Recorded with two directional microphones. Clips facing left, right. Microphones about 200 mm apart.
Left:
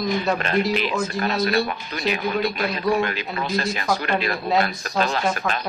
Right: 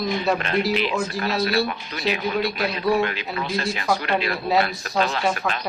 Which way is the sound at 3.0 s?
45° left (ahead or behind).